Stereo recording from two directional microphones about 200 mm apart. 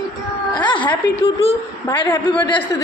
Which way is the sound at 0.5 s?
25° left (ahead or behind).